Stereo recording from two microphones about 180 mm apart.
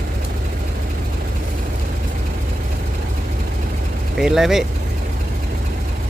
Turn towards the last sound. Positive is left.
turn(degrees=0)  # may be behind; listen again after turning